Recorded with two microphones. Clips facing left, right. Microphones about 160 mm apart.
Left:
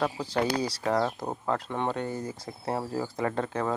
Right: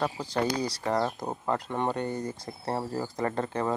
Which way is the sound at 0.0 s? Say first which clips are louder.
Left 1 dB; 5° left (ahead or behind).